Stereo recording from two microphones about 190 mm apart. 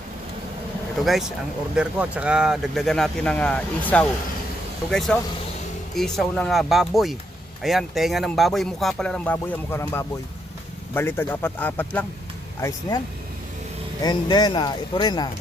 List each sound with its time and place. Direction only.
1.0 s a man's voice: centre (ahead or behind); by 13.0 s 15° left (ahead or behind)
14.0 s speech: 20° left (ahead or behind)